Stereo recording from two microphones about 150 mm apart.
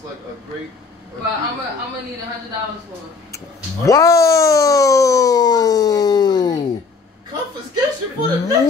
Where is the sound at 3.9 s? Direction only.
20° left (ahead or behind).